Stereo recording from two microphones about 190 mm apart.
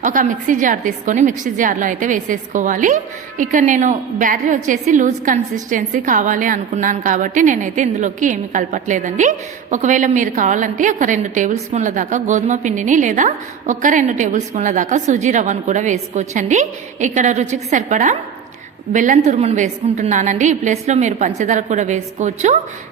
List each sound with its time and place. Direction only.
0.0 s a woman's voice: 45° right (ahead or behind)